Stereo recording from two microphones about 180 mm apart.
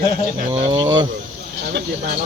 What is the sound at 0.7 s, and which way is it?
Speech, 20° right (ahead or behind).